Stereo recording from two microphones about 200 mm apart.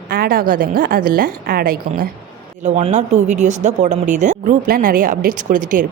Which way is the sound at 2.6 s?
35° right (ahead or behind).